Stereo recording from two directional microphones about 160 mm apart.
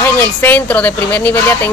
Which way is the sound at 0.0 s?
10° left (ahead or behind).